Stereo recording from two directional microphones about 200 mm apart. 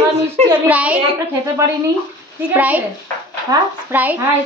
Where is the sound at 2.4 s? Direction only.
10° right (ahead or behind).